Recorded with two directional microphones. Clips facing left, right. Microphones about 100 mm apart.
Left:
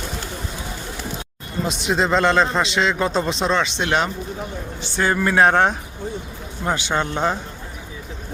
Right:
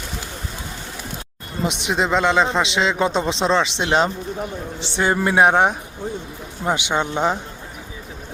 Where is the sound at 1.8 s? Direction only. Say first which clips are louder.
Left 1 dB; 15° right (ahead or behind).